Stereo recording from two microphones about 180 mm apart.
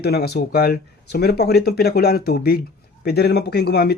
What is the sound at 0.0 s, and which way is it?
Speech, 65° left (ahead or behind).